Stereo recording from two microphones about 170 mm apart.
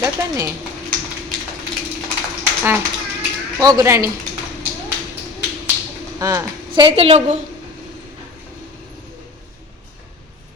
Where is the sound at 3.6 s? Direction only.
20° right (ahead or behind).